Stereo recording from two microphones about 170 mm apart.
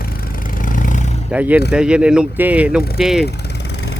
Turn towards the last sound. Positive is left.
turn(degrees=-5)  # may be behind; listen again after turning